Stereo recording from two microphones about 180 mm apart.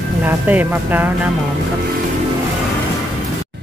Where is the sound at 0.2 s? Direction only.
10° right (ahead or behind).